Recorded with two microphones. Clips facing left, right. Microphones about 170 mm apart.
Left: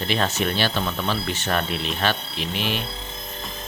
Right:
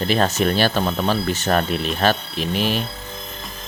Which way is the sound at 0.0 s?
40° right (ahead or behind).